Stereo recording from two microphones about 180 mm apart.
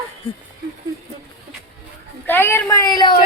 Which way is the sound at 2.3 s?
10° left (ahead or behind).